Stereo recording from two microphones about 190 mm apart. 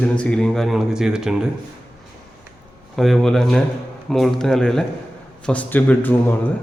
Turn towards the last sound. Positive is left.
turn(degrees=10)  # may be behind; listen again after turning